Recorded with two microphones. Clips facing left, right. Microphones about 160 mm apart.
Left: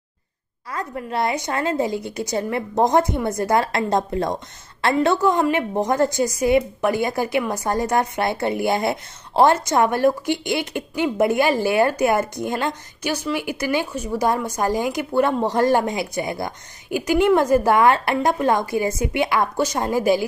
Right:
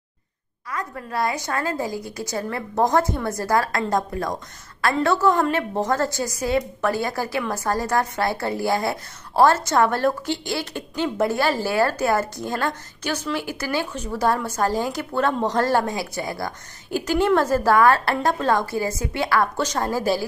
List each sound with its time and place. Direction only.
0.7 s a woman's voice: 25° left (ahead or behind)